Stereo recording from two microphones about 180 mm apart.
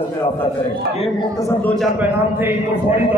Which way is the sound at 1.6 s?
Centre (ahead or behind).